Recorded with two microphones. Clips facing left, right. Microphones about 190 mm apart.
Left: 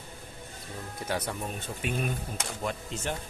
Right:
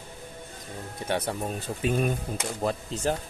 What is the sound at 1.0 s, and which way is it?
Speech, 30° right (ahead or behind).